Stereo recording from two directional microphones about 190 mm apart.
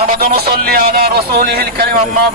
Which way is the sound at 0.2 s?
55° right (ahead or behind).